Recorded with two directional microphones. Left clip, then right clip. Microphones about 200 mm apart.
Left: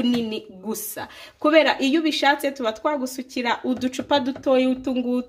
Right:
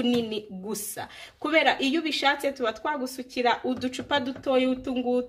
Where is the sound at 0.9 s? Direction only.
55° left (ahead or behind).